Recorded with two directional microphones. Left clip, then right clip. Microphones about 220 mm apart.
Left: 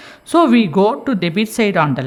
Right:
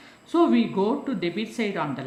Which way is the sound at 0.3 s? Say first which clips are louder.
Left 9 dB; 55° left (ahead or behind).